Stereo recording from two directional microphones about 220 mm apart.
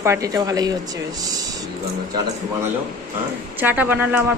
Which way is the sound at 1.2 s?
15° right (ahead or behind).